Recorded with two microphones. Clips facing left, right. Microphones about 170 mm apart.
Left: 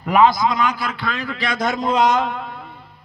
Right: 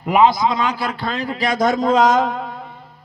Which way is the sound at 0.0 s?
20° right (ahead or behind).